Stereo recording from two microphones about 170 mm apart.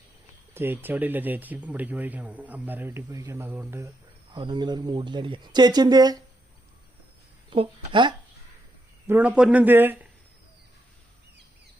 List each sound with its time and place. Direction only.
0.5 s speech: 10° right (ahead or behind)
4.4 s speech: 25° right (ahead or behind)
7.5 s speech: 30° right (ahead or behind)
9.0 s speech: 10° right (ahead or behind)